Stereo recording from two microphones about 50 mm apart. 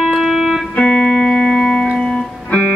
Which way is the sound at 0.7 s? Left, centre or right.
Left.